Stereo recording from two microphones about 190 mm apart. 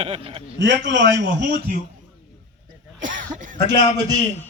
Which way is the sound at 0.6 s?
70° right (ahead or behind).